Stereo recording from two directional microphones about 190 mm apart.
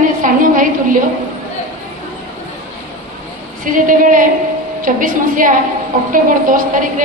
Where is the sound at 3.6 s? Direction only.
45° right (ahead or behind).